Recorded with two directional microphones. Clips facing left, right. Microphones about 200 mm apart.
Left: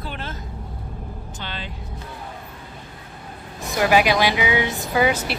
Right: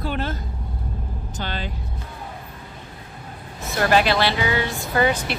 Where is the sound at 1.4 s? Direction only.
40° right (ahead or behind).